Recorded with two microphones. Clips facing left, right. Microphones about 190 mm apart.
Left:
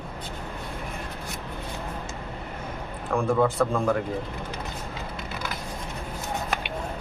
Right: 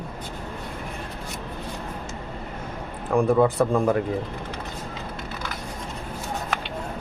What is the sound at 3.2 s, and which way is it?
Speech, 15° right (ahead or behind).